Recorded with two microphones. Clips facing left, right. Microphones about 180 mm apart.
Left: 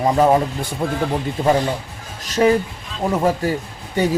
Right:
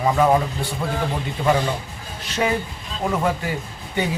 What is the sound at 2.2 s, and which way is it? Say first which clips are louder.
A man's voice: left 7 dB; 40° left (ahead or behind).